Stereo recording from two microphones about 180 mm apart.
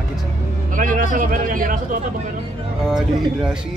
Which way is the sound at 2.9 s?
5° right (ahead or behind).